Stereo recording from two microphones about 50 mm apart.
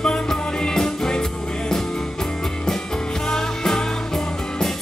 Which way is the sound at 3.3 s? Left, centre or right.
Centre.